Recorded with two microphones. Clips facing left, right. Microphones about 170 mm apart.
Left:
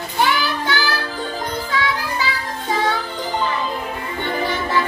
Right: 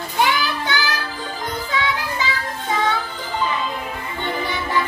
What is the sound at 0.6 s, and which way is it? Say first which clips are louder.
Music: left 2 dB; 20° right (ahead or behind).